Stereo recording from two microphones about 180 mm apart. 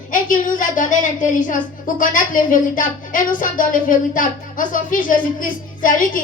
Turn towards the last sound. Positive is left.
turn(degrees=50)  # may be behind; listen again after turning